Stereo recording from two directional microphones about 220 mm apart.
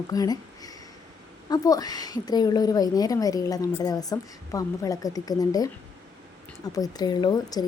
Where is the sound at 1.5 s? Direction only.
15° left (ahead or behind).